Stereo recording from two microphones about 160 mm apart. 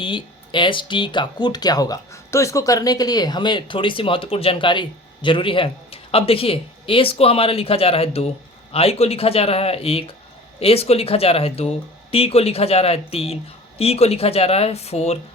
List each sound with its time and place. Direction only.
0.0 s speech: 30° left (ahead or behind)